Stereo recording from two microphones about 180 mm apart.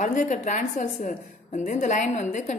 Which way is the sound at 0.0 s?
45° left (ahead or behind).